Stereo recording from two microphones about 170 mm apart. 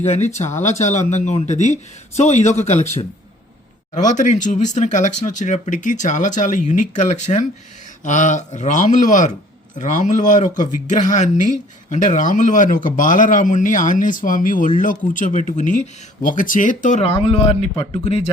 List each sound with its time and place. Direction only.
0.0 s speech: 40° left (ahead or behind)
17.0 s speech: 35° left (ahead or behind)